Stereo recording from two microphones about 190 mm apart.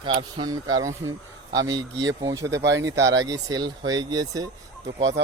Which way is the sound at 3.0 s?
70° right (ahead or behind).